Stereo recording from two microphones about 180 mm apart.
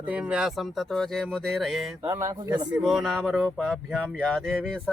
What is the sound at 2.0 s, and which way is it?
Speech, 15° right (ahead or behind).